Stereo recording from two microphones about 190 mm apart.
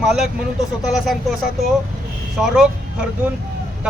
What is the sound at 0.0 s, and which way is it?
Speech, centre (ahead or behind).